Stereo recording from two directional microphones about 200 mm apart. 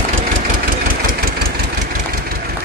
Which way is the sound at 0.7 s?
45° right (ahead or behind).